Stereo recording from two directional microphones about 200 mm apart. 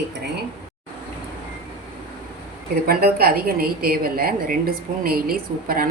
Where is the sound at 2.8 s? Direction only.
50° right (ahead or behind).